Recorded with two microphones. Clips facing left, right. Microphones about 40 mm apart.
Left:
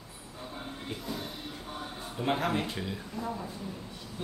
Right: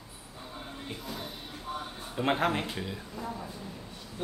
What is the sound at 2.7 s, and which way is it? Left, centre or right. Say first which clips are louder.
Speech: left 1 dB; centre.